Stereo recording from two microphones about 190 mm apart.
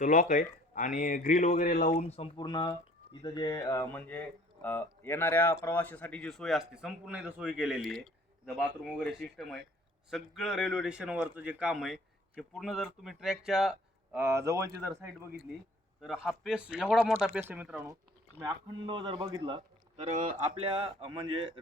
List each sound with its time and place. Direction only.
0.0 s speech: 45° left (ahead or behind); by 17.8 s 5° right (ahead or behind)
18.4 s a man's voice: 25° right (ahead or behind)
20.1 s a man's voice: 40° right (ahead or behind)